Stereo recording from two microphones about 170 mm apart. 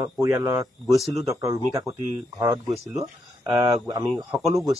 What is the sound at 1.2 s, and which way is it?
Speech, 20° right (ahead or behind).